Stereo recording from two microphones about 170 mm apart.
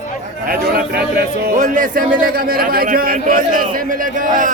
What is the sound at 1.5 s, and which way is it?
A man's voice, 50° right (ahead or behind).